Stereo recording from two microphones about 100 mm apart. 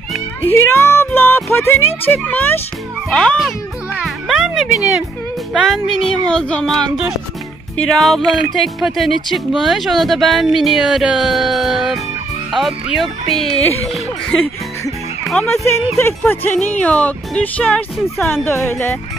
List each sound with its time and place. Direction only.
0.4 s music: 25° left (ahead or behind)
2.0 s a child's voice: 15° left (ahead or behind); by 13.5 s centre (ahead or behind)
15.4 s speech: 30° left (ahead or behind)
17.9 s speech: centre (ahead or behind)
18.3 s speech: 20° left (ahead or behind)